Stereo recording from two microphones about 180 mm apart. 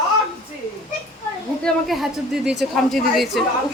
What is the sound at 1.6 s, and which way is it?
A woman's voice, centre (ahead or behind).